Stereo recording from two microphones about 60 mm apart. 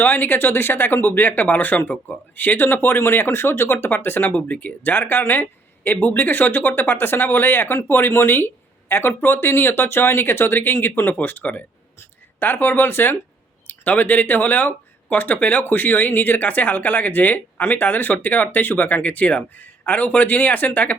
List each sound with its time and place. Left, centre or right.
0.0 s speech: left
4.4 s speech: left